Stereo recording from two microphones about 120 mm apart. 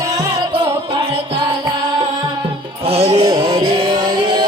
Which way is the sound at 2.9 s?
60° right (ahead or behind).